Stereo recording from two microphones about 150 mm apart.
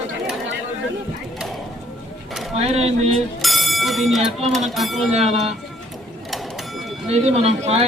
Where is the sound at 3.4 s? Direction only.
Centre (ahead or behind).